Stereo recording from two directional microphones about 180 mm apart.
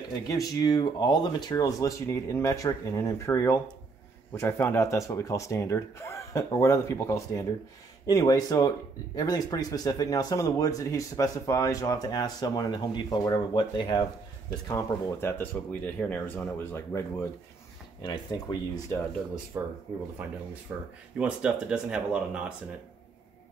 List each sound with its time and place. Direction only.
0.3 s speech: 20° left (ahead or behind)
14.7 s speech: 15° left (ahead or behind)
18.0 s speech: 20° left (ahead or behind)
19.5 s speech: 15° right (ahead or behind)